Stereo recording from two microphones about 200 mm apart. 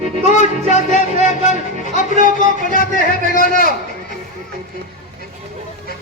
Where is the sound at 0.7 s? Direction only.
35° left (ahead or behind).